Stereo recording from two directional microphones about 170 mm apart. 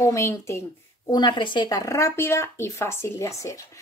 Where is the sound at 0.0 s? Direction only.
15° left (ahead or behind).